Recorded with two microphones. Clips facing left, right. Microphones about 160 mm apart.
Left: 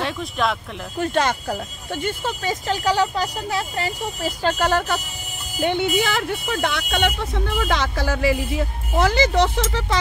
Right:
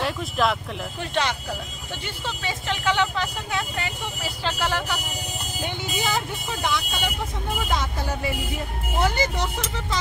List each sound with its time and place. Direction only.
0.0 s speech: centre (ahead or behind)
0.9 s speech: 45° left (ahead or behind)
5.6 s speech: 60° left (ahead or behind)
7.6 s speech: 85° left